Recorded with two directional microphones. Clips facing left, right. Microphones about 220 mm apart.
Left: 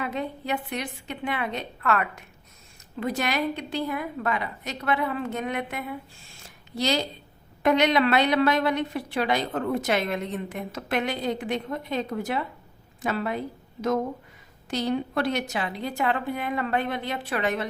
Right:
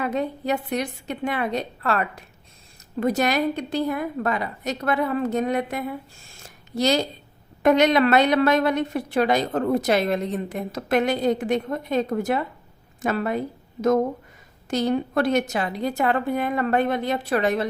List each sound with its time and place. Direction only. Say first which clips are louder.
0.0 s a woman's voice: right 5 dB; 45° right (ahead or behind)
6.3 s a sound: right 6 dB; 45° right (ahead or behind)
7.6 s a woman's voice: right 4 dB; 45° right (ahead or behind)
14.7 s a woman's voice: right 4 dB; 45° right (ahead or behind)